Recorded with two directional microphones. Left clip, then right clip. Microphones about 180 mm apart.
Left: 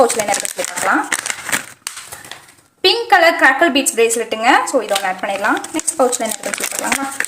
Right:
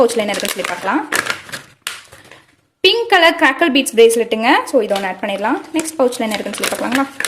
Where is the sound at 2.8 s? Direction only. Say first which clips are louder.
Even; 30° right (ahead or behind).